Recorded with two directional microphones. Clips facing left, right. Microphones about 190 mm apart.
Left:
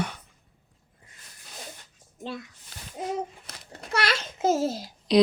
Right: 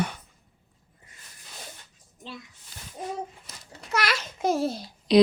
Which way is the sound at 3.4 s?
55° left (ahead or behind).